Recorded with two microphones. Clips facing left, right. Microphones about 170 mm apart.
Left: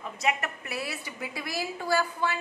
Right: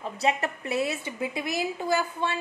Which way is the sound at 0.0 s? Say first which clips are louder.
Right 3 dB; 30° right (ahead or behind).